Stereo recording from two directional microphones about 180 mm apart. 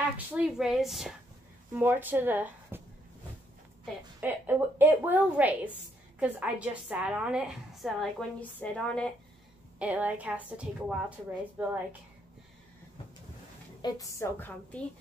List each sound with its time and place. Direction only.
0.3 s a woman's voice: 5° right (ahead or behind)
4.2 s a woman's voice: 10° right (ahead or behind); by 9.1 s 5° left (ahead or behind)
9.8 s a woman's voice: 10° right (ahead or behind)
13.7 s a woman's voice: 20° left (ahead or behind)